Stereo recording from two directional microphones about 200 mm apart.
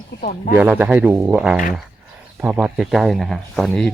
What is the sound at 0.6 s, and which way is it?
Speech, 5° right (ahead or behind).